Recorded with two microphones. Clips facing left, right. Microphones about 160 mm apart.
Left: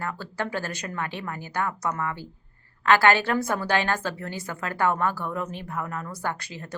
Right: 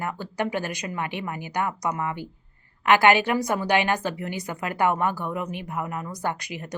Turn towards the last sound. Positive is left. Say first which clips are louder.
# right 2 dB
turn(degrees=-15)  # may be behind; listen again after turning